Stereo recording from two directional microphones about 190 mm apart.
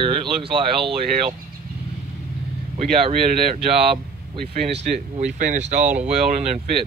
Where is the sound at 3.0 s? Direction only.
30° right (ahead or behind).